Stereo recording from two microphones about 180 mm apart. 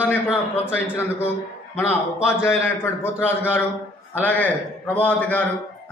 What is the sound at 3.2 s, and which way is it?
A man's voice, 10° left (ahead or behind).